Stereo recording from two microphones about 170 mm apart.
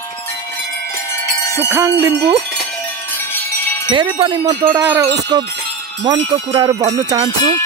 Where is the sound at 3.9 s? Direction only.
30° right (ahead or behind).